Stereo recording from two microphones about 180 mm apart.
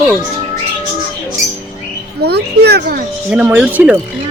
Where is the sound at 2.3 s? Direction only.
65° right (ahead or behind).